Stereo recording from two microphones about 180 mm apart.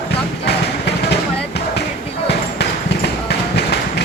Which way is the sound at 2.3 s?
65° left (ahead or behind).